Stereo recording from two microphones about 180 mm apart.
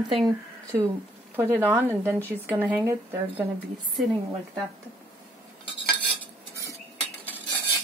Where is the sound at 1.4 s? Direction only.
10° right (ahead or behind).